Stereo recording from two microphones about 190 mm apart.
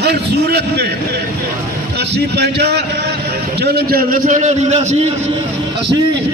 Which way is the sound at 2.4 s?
60° right (ahead or behind).